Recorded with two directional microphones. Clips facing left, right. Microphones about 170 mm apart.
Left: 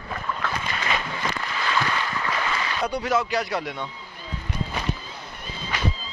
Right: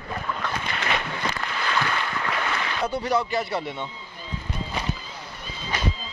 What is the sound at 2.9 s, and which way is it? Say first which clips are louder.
Speech: even; 25° right (ahead or behind).